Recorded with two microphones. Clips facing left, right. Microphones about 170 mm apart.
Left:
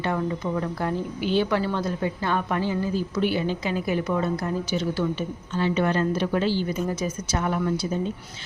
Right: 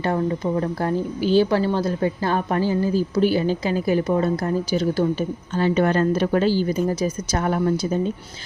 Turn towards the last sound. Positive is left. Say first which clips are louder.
# right 4 dB
turn(degrees=-45)  # may be behind; listen again after turning